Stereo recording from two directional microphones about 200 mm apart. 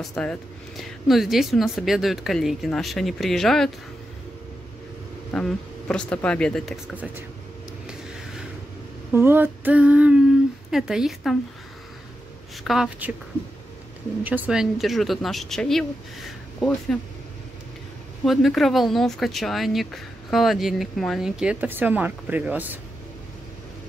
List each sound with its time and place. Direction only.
0.1 s speech: 5° left (ahead or behind)
5.3 s speech: 5° left (ahead or behind)
9.1 s female singing: 10° right (ahead or behind)
10.7 s speech: centre (ahead or behind)
12.6 s speech: centre (ahead or behind)
14.2 s speech: 10° right (ahead or behind)
18.2 s speech: centre (ahead or behind)